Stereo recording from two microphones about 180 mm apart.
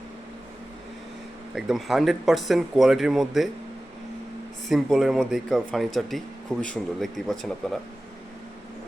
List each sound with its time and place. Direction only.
1.5 s speech: centre (ahead or behind)
4.7 s speech: centre (ahead or behind)